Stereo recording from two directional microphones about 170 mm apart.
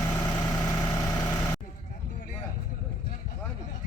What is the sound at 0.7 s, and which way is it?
Vehicle, 20° left (ahead or behind).